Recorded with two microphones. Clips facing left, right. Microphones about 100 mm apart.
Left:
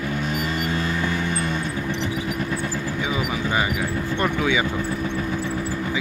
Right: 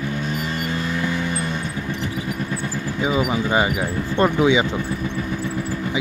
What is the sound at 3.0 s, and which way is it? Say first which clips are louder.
Speech: right 7 dB; 25° right (ahead or behind).